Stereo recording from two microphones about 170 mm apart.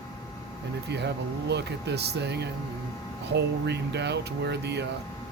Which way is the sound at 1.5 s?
80° right.